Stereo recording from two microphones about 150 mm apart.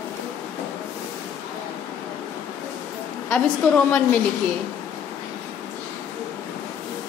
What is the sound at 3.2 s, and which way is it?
Speech, 5° left (ahead or behind).